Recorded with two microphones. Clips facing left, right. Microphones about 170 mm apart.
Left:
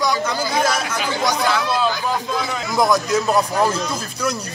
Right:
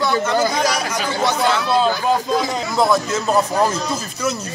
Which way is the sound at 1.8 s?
40° right (ahead or behind).